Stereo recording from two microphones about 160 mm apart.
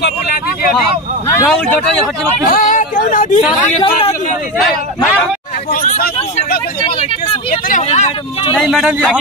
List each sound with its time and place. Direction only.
0.0 s speech: 70° left (ahead or behind)
1.4 s speech: centre (ahead or behind)
2.4 s speech: 55° left (ahead or behind)
3.3 s speech: 35° left (ahead or behind)
5.7 s speech: 55° left (ahead or behind)
7.7 s speech: 45° left (ahead or behind)
8.5 s speech: centre (ahead or behind)